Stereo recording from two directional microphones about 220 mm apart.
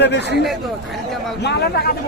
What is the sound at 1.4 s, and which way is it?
Speech, 50° left (ahead or behind).